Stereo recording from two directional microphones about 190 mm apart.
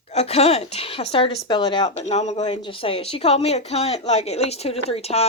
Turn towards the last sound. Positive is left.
turn(degrees=30)  # may be behind; listen again after turning